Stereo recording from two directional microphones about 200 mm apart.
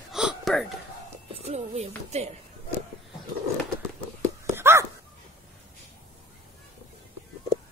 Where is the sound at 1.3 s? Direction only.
30° right (ahead or behind).